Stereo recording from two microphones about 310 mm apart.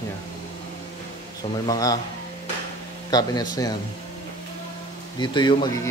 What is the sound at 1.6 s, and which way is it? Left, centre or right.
Speech, centre.